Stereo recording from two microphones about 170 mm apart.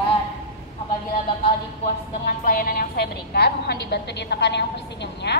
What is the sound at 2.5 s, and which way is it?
A woman's voice, 60° left (ahead or behind).